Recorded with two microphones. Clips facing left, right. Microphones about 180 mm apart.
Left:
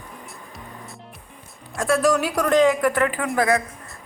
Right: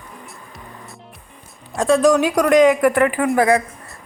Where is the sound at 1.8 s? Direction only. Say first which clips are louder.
Right 5 dB; 20° right (ahead or behind).